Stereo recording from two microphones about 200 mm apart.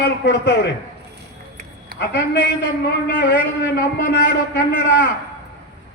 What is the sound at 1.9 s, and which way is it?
A man's voice, 60° left (ahead or behind).